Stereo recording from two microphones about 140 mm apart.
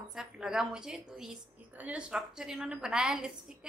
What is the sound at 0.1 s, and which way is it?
A woman's voice, 5° right (ahead or behind).